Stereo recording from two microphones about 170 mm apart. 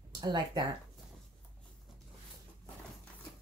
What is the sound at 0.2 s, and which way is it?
Speech, 25° right (ahead or behind).